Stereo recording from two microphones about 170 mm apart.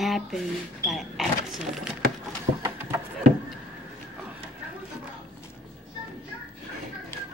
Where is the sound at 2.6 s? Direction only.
20° right (ahead or behind).